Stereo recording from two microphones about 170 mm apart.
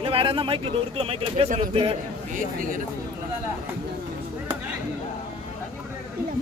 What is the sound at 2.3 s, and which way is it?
Speech, 50° right (ahead or behind).